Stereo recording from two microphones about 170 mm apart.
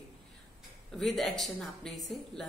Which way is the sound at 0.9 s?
Centre (ahead or behind).